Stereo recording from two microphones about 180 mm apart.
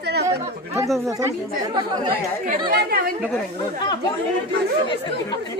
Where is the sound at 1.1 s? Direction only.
20° right (ahead or behind).